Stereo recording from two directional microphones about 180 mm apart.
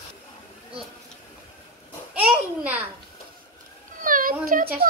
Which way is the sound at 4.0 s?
50° right (ahead or behind).